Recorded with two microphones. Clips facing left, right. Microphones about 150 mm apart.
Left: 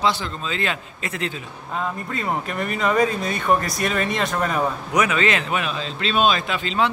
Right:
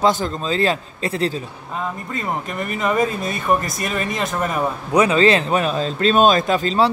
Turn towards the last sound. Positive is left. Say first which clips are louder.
# right 5 dB
turn(degrees=-40)  # may be behind; listen again after turning